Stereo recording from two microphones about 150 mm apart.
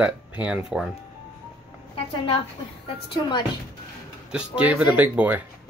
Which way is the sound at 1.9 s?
40° left (ahead or behind).